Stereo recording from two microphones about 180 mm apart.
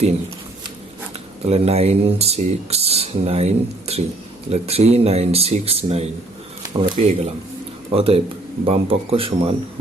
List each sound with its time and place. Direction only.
1.5 s speech: 35° right (ahead or behind)